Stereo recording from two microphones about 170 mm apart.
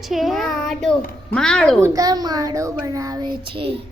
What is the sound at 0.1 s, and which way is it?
Child singing, centre (ahead or behind).